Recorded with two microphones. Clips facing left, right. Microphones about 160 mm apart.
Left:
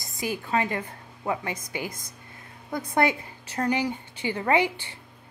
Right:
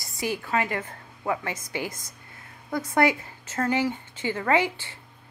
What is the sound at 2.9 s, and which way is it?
A woman's voice, 20° left (ahead or behind).